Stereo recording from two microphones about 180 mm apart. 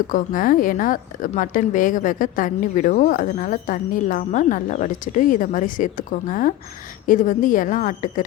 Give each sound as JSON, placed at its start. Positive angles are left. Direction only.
{"t": 0.1, "sound": "a woman's voice", "side_deg": 50}